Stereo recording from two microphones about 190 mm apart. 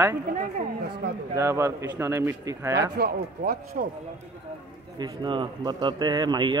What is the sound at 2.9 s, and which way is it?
Speech, 55° right (ahead or behind).